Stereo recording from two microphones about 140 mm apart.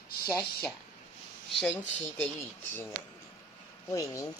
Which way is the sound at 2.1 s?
15° left (ahead or behind).